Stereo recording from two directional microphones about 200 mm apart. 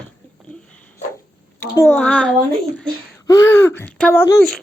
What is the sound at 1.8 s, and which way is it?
Speech, 10° left (ahead or behind).